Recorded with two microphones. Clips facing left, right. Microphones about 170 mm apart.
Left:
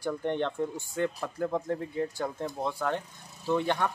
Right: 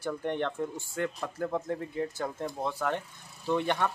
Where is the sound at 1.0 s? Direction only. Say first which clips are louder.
Left 2 dB; 10° left (ahead or behind).